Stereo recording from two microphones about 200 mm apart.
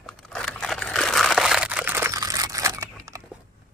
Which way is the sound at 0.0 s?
5° left (ahead or behind).